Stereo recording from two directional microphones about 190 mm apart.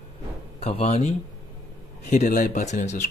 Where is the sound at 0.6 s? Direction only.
30° left (ahead or behind).